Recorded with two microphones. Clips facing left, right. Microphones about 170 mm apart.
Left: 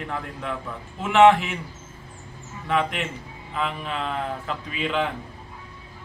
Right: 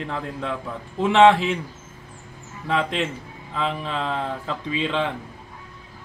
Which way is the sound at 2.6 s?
30° right (ahead or behind).